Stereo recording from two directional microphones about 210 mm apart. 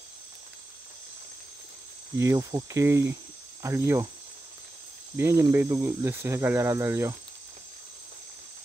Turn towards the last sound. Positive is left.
turn(degrees=-15)  # may be behind; listen again after turning